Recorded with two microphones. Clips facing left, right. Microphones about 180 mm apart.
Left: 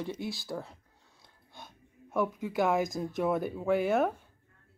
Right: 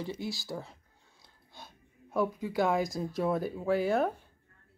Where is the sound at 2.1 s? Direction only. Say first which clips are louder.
Even; 15° left (ahead or behind).